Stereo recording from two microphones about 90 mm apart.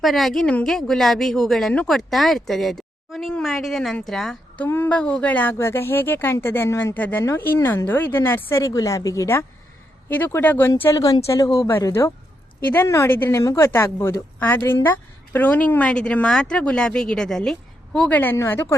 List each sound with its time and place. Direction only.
0.0 s a woman's voice: centre (ahead or behind)
4.7 s speech: 20° left (ahead or behind)
5.5 s a woman's voice: 30° left (ahead or behind)
8.6 s a woman's voice: 40° left (ahead or behind); by 10.7 s 20° left (ahead or behind)
10.9 s speech: 40° left (ahead or behind)
11.9 s a woman's voice: 25° left (ahead or behind); by 18.2 s 10° left (ahead or behind)
18.3 s a woman's voice: 25° left (ahead or behind)